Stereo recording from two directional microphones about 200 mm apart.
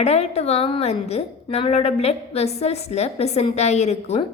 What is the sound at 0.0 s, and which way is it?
A woman's voice, 30° left (ahead or behind).